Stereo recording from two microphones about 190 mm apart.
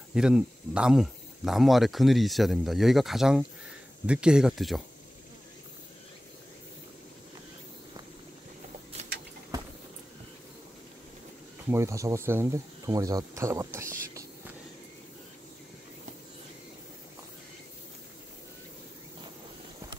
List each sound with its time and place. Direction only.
0.1 s speech: 5° right (ahead or behind)
11.7 s speech: 15° right (ahead or behind)